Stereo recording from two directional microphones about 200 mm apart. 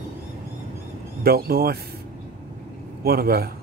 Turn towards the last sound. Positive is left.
turn(degrees=-50)  # may be behind; listen again after turning